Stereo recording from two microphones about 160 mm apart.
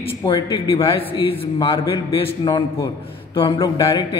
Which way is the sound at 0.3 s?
35° left (ahead or behind).